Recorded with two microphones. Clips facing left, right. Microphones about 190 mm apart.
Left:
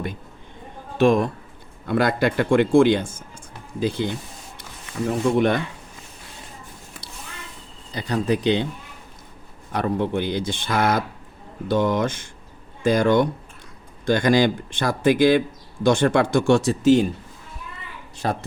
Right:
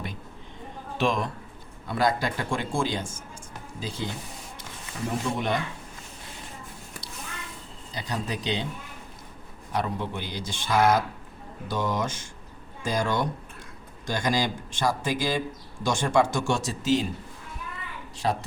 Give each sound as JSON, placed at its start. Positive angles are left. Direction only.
{"t": 0.9, "sound": "speech", "side_deg": 50}
{"t": 1.9, "sound": "speech", "side_deg": 60}
{"t": 7.9, "sound": "speech", "side_deg": 60}
{"t": 9.7, "sound": "speech", "side_deg": 60}
{"t": 18.2, "sound": "speech", "side_deg": 55}